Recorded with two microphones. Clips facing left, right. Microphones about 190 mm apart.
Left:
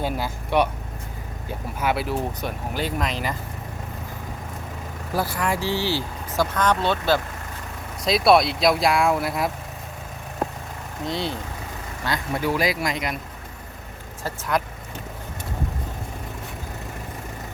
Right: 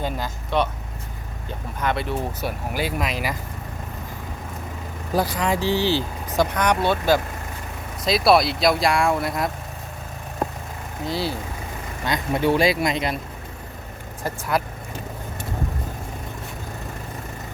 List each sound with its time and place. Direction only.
0.0 s speech: 10° left (ahead or behind); by 3.3 s 10° right (ahead or behind)
5.1 s speech: 20° right (ahead or behind)
8.0 s speech: centre (ahead or behind)
11.0 s speech: 5° right (ahead or behind)
12.0 s speech: 20° right (ahead or behind)
14.3 s speech: 10° right (ahead or behind)